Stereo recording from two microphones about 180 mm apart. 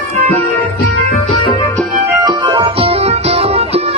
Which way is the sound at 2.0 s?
20° right (ahead or behind).